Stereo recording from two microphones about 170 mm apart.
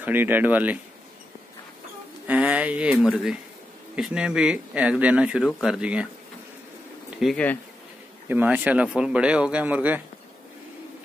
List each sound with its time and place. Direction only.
0.0 s speech: 10° right (ahead or behind)
2.2 s speech: 5° right (ahead or behind)
7.2 s speech: centre (ahead or behind)
8.3 s speech: 10° right (ahead or behind)